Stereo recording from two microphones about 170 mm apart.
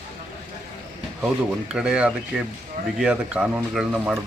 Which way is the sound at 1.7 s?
5° right (ahead or behind).